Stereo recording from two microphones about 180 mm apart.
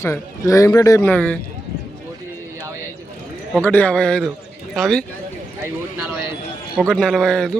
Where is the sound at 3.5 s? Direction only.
10° left (ahead or behind).